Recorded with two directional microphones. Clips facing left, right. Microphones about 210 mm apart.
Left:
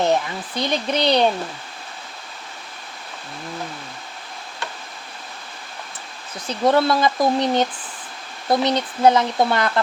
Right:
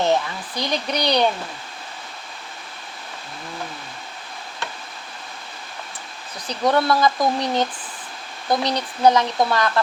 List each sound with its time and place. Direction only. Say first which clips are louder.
0.0 s speech: left 1 dB; 20° left (ahead or behind)
6.7 s speech: left 1 dB; 25° left (ahead or behind)